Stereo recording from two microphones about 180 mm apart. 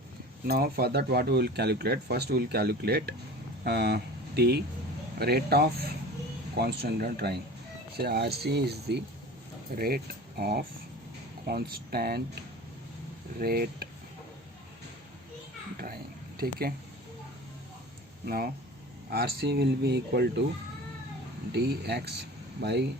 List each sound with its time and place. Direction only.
0.4 s speech: 60° right (ahead or behind)
9.7 s speech: 55° right (ahead or behind)
13.4 s speech: 55° right (ahead or behind)
16.4 s speech: 55° right (ahead or behind)
18.3 s speech: 55° right (ahead or behind)
21.5 s speech: 65° right (ahead or behind)